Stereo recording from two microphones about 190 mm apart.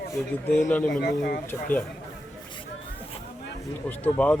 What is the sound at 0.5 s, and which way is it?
Speech, 10° left (ahead or behind).